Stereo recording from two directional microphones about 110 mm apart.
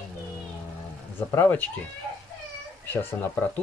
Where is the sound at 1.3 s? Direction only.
15° left (ahead or behind).